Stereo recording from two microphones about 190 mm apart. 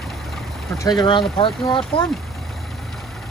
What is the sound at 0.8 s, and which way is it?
Speech, 20° left (ahead or behind).